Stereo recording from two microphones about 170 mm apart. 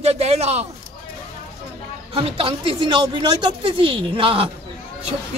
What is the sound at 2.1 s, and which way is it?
A woman's voice, 30° right (ahead or behind).